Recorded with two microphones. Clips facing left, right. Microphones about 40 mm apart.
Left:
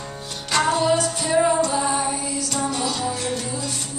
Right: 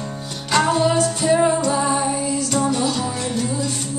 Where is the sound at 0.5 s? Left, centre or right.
Centre.